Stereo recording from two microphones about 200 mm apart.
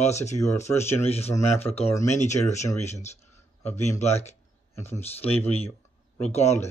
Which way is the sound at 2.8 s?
35° left (ahead or behind).